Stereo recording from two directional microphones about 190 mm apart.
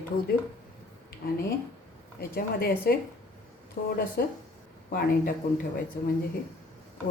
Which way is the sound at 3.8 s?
55° left (ahead or behind).